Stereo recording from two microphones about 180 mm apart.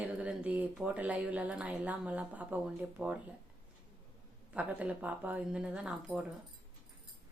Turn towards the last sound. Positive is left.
turn(degrees=-5)  # may be behind; listen again after turning